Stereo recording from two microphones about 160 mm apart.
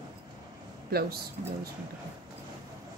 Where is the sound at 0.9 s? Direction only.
80° right.